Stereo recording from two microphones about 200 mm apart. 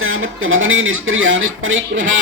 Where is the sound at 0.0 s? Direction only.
85° right.